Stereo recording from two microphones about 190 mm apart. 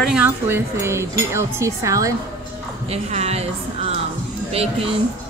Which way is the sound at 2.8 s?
35° right (ahead or behind).